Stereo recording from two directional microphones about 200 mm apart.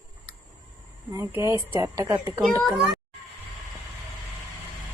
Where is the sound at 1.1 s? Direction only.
15° right (ahead or behind).